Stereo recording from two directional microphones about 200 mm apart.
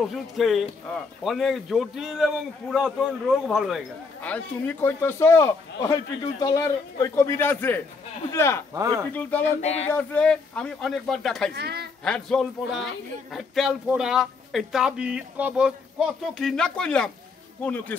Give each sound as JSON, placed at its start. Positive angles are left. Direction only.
{"t": 0.0, "sound": "a man's voice", "side_deg": 0}
{"t": 9.6, "sound": "speech", "side_deg": 30}
{"t": 9.9, "sound": "speech", "side_deg": 5}
{"t": 11.5, "sound": "speech", "side_deg": -55}
{"t": 12.0, "sound": "speech", "side_deg": 0}